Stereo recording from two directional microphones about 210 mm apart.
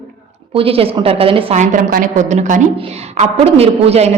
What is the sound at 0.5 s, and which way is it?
A woman's voice, 25° right (ahead or behind).